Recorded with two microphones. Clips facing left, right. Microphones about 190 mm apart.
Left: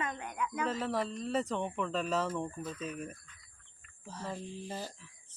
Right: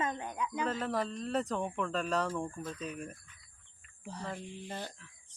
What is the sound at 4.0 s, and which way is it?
Speech, 20° right (ahead or behind).